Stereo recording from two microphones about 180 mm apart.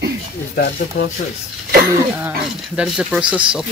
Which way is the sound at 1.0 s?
90° left.